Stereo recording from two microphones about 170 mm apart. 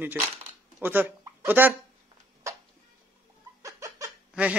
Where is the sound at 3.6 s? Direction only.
20° right (ahead or behind).